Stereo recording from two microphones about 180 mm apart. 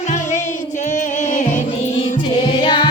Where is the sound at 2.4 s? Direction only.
25° left (ahead or behind).